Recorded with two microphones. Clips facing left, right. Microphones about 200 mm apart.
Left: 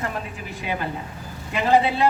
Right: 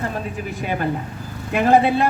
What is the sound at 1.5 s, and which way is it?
Speech, 55° right (ahead or behind).